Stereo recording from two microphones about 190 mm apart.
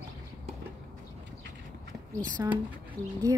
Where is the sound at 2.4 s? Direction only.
15° right (ahead or behind).